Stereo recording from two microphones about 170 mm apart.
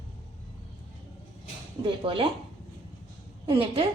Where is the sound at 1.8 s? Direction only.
30° right (ahead or behind).